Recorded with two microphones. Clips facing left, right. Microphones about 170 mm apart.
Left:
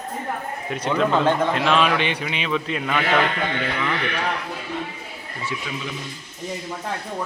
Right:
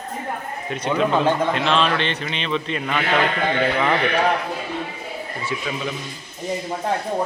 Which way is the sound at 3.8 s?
50° right (ahead or behind).